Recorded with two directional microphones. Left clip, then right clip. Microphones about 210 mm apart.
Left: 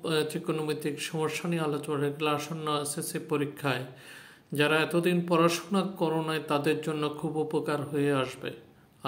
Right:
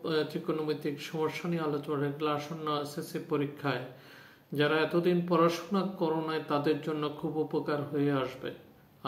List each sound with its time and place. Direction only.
0.0 s speech: 30° left (ahead or behind)